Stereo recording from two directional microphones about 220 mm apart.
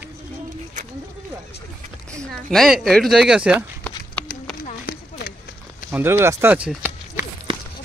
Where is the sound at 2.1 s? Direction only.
Centre (ahead or behind).